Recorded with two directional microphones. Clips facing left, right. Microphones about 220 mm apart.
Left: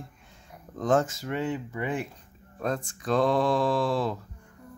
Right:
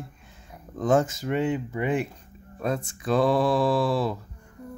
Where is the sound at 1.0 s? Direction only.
20° right (ahead or behind).